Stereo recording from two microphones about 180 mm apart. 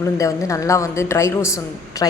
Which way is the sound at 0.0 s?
15° left (ahead or behind).